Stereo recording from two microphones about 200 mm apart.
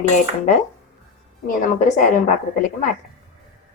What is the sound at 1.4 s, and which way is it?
Speech, 40° left (ahead or behind).